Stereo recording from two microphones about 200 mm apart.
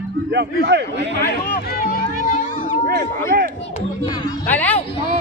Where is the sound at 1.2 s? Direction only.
50° left (ahead or behind).